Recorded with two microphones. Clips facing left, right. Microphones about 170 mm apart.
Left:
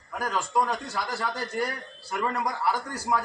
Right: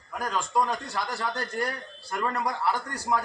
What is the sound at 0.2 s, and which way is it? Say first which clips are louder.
A man's voice: even; 5° left (ahead or behind).